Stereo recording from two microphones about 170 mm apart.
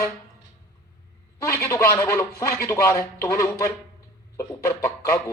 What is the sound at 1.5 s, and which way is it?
Speech, 15° left (ahead or behind).